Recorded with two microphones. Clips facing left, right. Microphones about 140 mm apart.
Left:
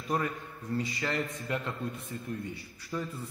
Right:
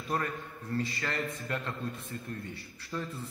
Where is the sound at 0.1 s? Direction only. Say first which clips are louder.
Left 1 dB; 15° left (ahead or behind).